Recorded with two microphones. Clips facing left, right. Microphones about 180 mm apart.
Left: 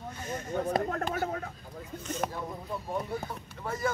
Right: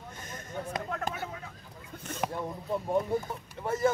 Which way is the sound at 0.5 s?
45° left (ahead or behind).